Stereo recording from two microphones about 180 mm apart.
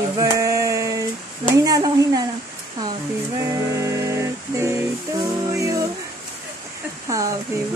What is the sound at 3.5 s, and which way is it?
Music, 15° right (ahead or behind).